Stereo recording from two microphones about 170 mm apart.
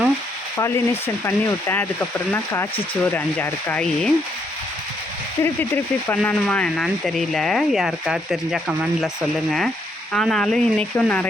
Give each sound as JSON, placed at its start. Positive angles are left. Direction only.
{"t": 0.5, "sound": "speech", "side_deg": 15}
{"t": 5.4, "sound": "speech", "side_deg": 10}
{"t": 10.1, "sound": "speech", "side_deg": 5}